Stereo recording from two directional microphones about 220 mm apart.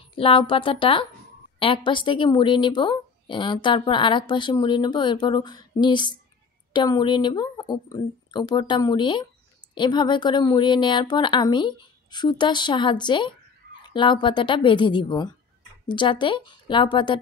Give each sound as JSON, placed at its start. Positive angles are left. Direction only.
{"t": 0.1, "sound": "a woman's voice", "side_deg": 25}